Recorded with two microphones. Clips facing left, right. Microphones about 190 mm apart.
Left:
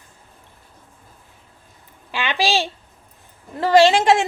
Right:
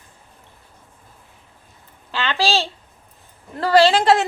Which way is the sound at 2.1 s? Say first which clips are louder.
Even; 15° left (ahead or behind).